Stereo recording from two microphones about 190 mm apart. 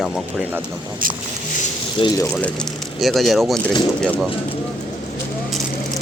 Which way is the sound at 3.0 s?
Centre (ahead or behind).